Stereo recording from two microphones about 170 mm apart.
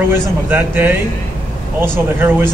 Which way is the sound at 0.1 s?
10° right (ahead or behind).